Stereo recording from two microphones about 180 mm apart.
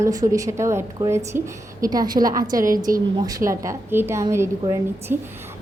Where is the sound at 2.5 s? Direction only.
50° right (ahead or behind).